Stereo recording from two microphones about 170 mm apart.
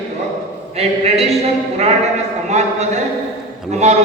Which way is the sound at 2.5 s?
40° right (ahead or behind).